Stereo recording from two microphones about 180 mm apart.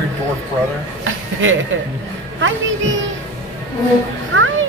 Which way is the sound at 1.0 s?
90° right.